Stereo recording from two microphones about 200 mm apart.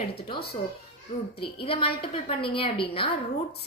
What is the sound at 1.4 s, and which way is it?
A woman's voice, 25° left (ahead or behind).